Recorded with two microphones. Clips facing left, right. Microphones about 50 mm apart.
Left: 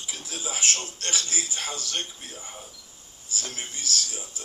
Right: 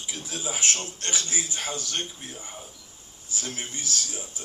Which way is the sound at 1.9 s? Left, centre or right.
Centre.